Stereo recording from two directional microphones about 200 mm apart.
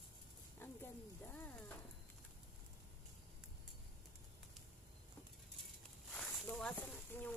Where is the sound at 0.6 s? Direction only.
10° left (ahead or behind).